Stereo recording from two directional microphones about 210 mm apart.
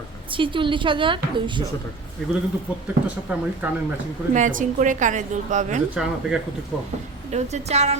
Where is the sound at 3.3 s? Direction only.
5° right (ahead or behind).